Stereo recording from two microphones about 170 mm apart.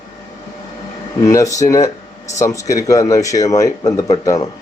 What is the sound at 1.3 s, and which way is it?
Speech, 20° left (ahead or behind).